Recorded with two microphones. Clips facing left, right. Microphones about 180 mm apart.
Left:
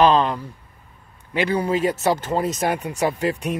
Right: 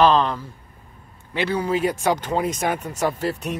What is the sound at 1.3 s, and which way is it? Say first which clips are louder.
Speech: left 2 dB; 10° left (ahead or behind).